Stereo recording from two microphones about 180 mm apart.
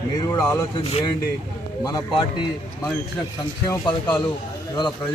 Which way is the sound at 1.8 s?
20° left (ahead or behind).